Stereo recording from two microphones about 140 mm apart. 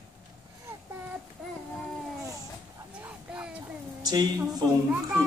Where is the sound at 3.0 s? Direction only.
10° right (ahead or behind).